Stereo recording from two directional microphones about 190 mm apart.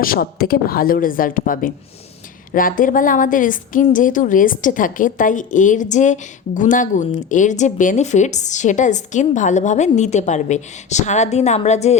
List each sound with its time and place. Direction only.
0.0 s a woman's voice: 50° left (ahead or behind)